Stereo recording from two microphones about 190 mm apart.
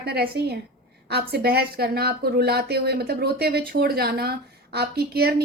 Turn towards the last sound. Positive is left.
turn(degrees=-55)  # may be behind; listen again after turning